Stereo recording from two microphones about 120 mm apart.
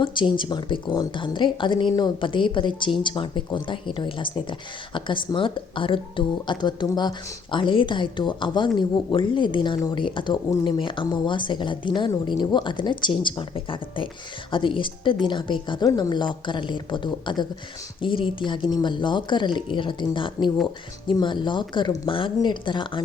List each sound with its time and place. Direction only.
0.0 s speech: 40° left (ahead or behind)